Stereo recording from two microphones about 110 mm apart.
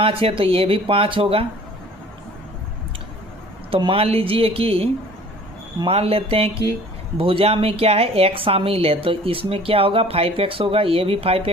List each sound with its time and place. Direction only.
0.0 s a woman's voice: 55° right (ahead or behind)
3.7 s a woman's voice: 55° right (ahead or behind)